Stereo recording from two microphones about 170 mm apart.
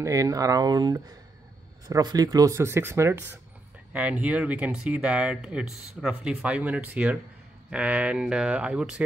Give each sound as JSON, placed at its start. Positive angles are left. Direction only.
{"t": 0.0, "sound": "speech", "side_deg": -20}